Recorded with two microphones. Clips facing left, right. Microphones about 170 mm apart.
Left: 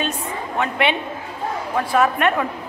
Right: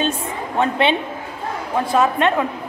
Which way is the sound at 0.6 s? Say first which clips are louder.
Right 4 dB; 30° right (ahead or behind).